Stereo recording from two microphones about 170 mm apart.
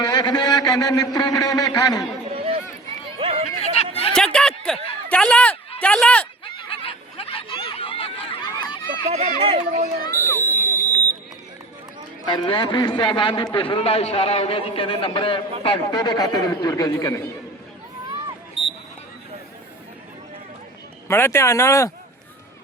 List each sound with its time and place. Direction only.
0.0 s a man's voice: 25° left (ahead or behind)
2.3 s run: 35° right (ahead or behind)
3.2 s a sound: 35° right (ahead or behind)
3.6 s chatter: 40° left (ahead or behind)
4.1 s a sound: 5° left (ahead or behind)
5.8 s speech: 5° left (ahead or behind)
6.4 s a sound: 30° left (ahead or behind)
9.0 s speech: 40° right (ahead or behind)
10.7 s buzzer: 20° right (ahead or behind)
12.2 s a man's voice: 25° left (ahead or behind)
21.1 s speech: 15° left (ahead or behind)